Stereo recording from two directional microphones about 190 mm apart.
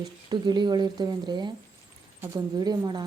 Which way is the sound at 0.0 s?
25° right (ahead or behind).